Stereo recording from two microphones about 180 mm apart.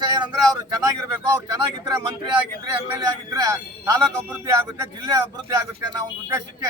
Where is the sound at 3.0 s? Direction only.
20° right (ahead or behind).